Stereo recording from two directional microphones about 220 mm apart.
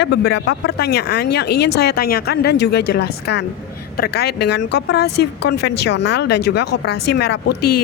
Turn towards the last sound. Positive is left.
turn(degrees=50)  # may be behind; listen again after turning